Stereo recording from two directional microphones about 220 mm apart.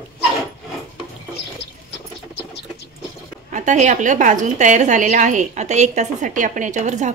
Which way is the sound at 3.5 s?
35° right (ahead or behind).